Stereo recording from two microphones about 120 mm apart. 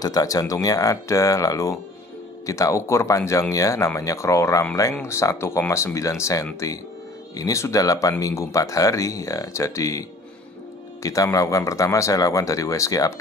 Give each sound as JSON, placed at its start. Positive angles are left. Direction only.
{"t": 0.0, "sound": "speech", "side_deg": 30}